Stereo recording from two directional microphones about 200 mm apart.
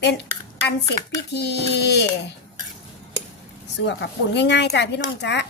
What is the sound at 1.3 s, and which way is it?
Speech, 55° left (ahead or behind).